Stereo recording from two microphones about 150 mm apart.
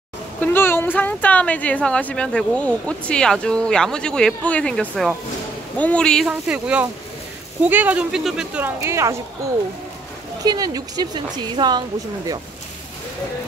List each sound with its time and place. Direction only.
0.4 s speech: 15° left (ahead or behind)
6.2 s a woman's voice: 10° right (ahead or behind)
10.4 s a woman's voice: 25° right (ahead or behind)